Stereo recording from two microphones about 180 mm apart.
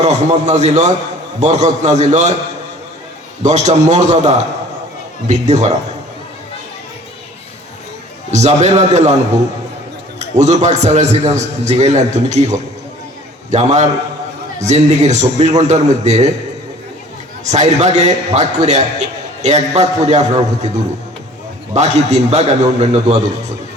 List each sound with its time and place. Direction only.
0.0 s a man's voice: 40° right (ahead or behind)
3.4 s a man's voice: 40° right (ahead or behind)
8.3 s a man's voice: 40° right (ahead or behind)
17.4 s a man's voice: 40° right (ahead or behind)
21.8 s a man's voice: 40° right (ahead or behind)